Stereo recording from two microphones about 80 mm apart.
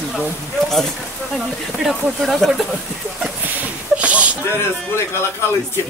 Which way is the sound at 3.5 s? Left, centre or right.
Centre.